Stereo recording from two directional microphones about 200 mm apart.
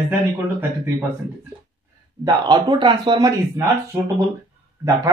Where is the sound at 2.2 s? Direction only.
20° right (ahead or behind).